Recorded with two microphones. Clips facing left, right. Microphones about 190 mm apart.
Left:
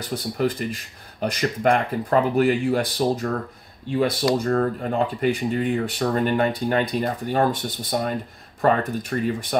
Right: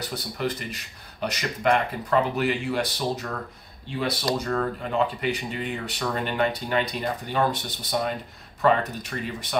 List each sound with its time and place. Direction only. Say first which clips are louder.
0.1 s speech: left 8 dB; 45° left (ahead or behind)